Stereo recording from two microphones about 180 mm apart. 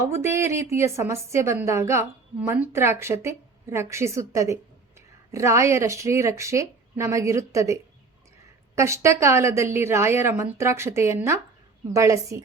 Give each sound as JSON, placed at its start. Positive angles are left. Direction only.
{"t": 0.0, "sound": "a woman's voice", "side_deg": -15}